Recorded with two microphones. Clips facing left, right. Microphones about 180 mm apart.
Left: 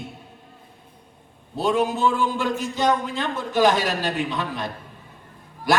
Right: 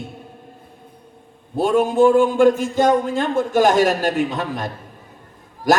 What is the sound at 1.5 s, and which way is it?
A man's voice, 50° right (ahead or behind).